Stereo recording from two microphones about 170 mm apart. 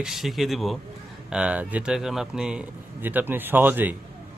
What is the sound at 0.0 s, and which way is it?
Speech, centre (ahead or behind).